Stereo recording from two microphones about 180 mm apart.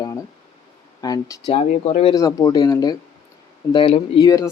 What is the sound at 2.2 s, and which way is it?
Speech, 20° left (ahead or behind).